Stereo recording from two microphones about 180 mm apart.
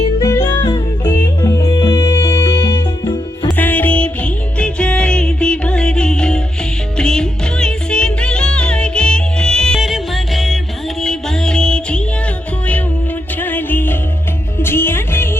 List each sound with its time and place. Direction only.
0.2 s music: 15° left (ahead or behind)
3.6 s music: 10° left (ahead or behind)
13.4 s music: 10° left (ahead or behind)